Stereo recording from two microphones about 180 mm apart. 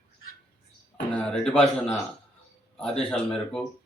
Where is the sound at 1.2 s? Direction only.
5° left (ahead or behind).